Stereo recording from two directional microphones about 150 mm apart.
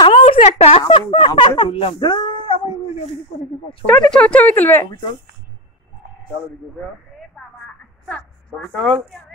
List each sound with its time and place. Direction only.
0.2 s speech: 50° left (ahead or behind)
3.8 s speech: 5° left (ahead or behind)
7.6 s telephone: 5° left (ahead or behind)